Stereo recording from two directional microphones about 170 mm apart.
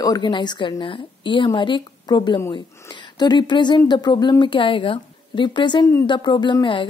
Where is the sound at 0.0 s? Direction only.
25° left (ahead or behind).